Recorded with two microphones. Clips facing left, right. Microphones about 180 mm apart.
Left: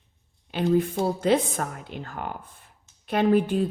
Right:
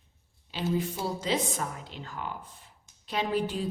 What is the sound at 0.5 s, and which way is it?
A woman's voice, 55° left (ahead or behind).